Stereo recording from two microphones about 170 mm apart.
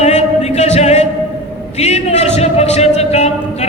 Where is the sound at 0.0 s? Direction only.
40° left (ahead or behind).